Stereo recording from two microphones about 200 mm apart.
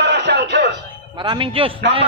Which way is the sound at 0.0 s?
60° right (ahead or behind).